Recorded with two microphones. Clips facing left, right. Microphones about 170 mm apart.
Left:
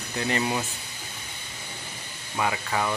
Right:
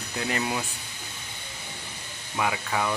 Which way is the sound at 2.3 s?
Centre (ahead or behind).